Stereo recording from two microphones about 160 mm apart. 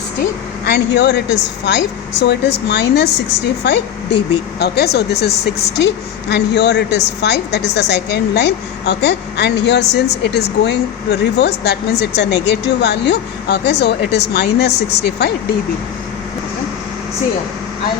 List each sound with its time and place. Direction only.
0.6 s a woman's voice: 90° left